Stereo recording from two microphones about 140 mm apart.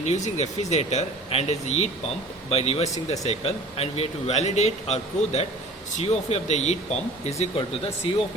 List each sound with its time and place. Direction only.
0.0 s speech: 55° left (ahead or behind)